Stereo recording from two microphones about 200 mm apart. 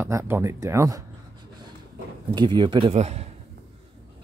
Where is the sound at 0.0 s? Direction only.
15° right (ahead or behind).